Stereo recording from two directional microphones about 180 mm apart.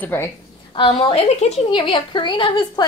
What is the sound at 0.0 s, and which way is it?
Speech, 10° left (ahead or behind).